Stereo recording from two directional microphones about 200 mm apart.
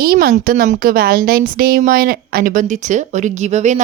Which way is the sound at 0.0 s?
50° right (ahead or behind).